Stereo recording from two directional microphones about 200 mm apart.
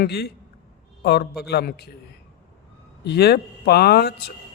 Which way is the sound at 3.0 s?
55° left (ahead or behind).